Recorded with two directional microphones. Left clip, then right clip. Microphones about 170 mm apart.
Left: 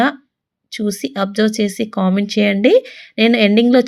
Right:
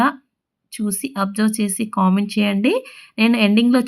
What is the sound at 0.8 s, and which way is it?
Speech, 25° left (ahead or behind).